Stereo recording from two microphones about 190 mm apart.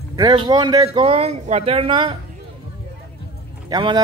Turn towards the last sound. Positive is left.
turn(degrees=-20)  # may be behind; listen again after turning